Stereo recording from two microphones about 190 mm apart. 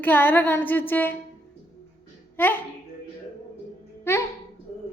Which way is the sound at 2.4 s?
10° left (ahead or behind).